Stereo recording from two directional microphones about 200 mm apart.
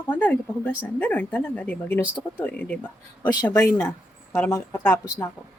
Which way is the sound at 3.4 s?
20° left (ahead or behind).